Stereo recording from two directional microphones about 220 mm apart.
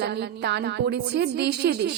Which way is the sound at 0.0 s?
50° right (ahead or behind).